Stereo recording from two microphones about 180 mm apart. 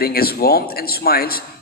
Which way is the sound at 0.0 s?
55° left (ahead or behind).